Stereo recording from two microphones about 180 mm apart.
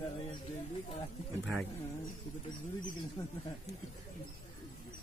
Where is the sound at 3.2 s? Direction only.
25° left (ahead or behind).